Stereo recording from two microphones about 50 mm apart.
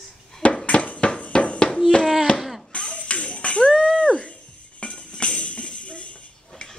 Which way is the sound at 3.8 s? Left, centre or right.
Left.